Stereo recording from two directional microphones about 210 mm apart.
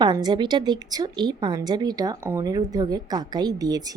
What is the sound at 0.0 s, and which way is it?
A woman's voice, 20° right (ahead or behind).